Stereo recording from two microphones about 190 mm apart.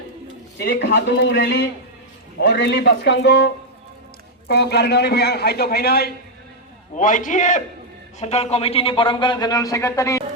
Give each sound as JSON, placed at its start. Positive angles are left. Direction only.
{"t": 0.6, "sound": "a man's voice", "side_deg": 70}
{"t": 6.9, "sound": "a man's voice", "side_deg": 45}